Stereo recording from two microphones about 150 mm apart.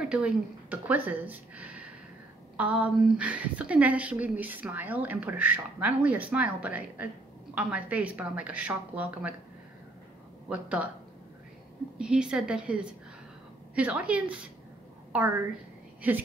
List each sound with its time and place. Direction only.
0.0 s a woman's voice: 5° right (ahead or behind)
10.5 s a woman's voice: 10° right (ahead or behind)
12.0 s a woman's voice: 5° right (ahead or behind)